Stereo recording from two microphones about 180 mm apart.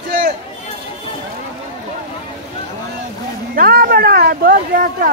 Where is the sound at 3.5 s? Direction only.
55° right (ahead or behind).